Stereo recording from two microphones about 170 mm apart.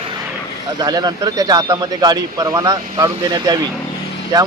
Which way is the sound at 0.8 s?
25° right (ahead or behind).